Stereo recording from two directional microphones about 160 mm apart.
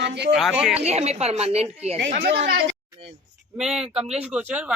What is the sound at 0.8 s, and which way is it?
A woman's voice, 40° right (ahead or behind).